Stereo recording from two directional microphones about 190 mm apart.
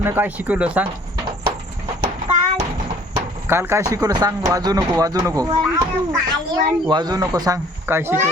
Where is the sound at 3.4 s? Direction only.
10° right (ahead or behind).